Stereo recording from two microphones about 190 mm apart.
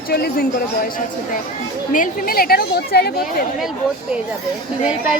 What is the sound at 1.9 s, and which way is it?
A woman's voice, 45° left (ahead or behind).